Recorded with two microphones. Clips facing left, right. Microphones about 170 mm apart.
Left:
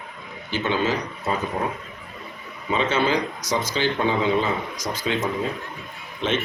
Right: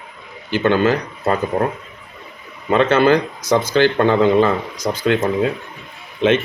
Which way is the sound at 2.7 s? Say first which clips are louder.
Right 8 dB; 65° right (ahead or behind).